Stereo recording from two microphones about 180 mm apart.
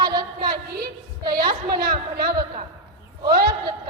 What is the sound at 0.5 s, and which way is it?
A woman's voice, 60° right (ahead or behind).